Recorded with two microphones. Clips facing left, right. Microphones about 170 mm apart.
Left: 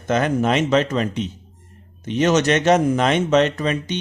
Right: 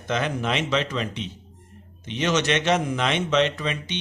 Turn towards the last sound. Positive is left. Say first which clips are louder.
# left 6 dB
turn(degrees=45)  # may be behind; listen again after turning